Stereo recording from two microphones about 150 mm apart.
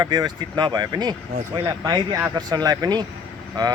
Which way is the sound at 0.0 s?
25° right (ahead or behind).